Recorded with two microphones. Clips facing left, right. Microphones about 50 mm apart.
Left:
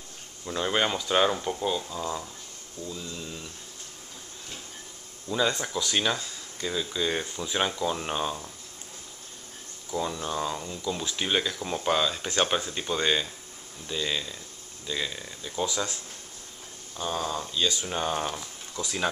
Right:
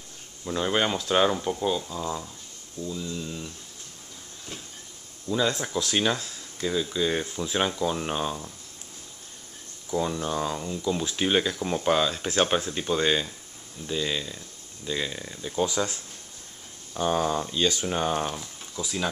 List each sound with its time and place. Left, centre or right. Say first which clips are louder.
0.5 s speech: right 1 dB; centre
5.3 s speech: right 1 dB; centre
9.8 s speech: right 3 dB; centre
15.6 s speech: right 3 dB; right
17.8 s speech: right 3 dB; centre